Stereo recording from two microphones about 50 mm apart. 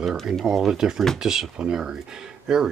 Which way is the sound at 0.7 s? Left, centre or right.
Centre.